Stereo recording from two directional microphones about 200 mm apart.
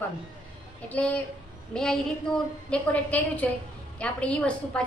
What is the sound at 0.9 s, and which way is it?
A woman's voice, 5° left (ahead or behind).